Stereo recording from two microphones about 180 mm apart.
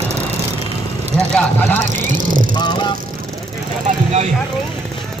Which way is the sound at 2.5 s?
25° left (ahead or behind).